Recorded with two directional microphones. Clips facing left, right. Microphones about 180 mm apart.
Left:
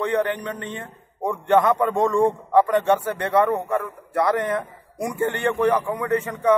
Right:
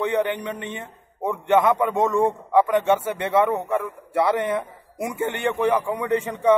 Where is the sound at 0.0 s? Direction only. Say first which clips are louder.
Even; 15° right (ahead or behind).